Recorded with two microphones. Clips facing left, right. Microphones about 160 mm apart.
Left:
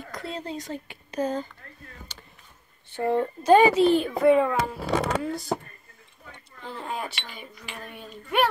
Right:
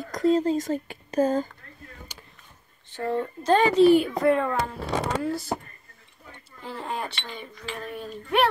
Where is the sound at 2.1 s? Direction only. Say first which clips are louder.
Right 1 dB; 10° right (ahead or behind).